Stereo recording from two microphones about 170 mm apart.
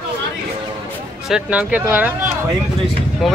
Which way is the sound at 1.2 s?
5° right (ahead or behind).